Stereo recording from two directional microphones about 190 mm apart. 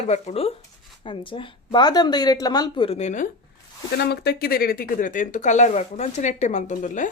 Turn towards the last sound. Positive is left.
turn(degrees=40)  # may be behind; listen again after turning